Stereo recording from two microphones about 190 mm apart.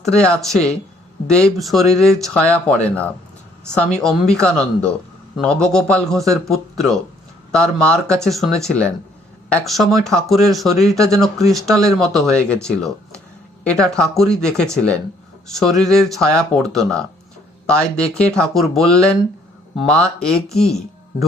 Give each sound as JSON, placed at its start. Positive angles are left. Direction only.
{"t": 0.0, "sound": "speech", "side_deg": 5}
{"t": 10.9, "sound": "speech", "side_deg": -15}
{"t": 11.2, "sound": "speech", "side_deg": 0}